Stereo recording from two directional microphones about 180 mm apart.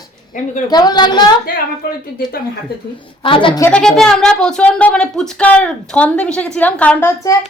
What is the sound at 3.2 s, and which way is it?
Speech, 30° left (ahead or behind).